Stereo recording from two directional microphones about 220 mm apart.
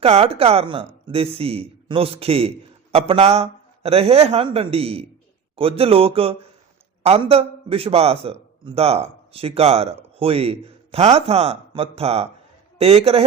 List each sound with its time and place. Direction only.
0.0 s a man's voice: 25° right (ahead or behind)